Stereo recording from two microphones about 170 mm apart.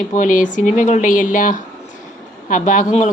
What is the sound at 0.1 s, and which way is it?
A woman's voice, 50° left (ahead or behind).